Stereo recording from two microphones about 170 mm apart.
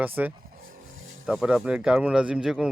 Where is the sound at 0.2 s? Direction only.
10° right (ahead or behind).